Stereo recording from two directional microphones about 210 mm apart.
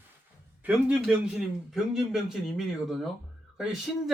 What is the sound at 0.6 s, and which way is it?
A man's voice, 5° right (ahead or behind).